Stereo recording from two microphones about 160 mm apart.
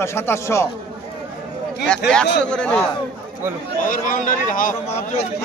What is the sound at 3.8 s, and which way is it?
Speech, 55° left (ahead or behind).